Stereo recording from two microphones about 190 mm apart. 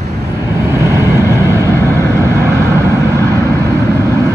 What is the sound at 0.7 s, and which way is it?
Vehicle, 15° right (ahead or behind).